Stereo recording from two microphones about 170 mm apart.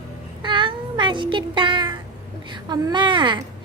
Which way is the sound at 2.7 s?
25° right (ahead or behind).